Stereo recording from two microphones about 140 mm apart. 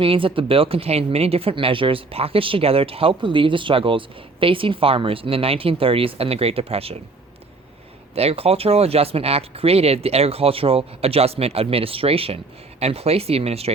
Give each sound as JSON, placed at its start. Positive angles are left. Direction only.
{"t": 0.0, "sound": "speech", "side_deg": -40}
{"t": 8.1, "sound": "speech", "side_deg": -45}